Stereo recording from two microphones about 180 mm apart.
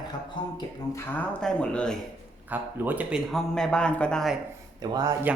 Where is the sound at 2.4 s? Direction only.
10° right (ahead or behind).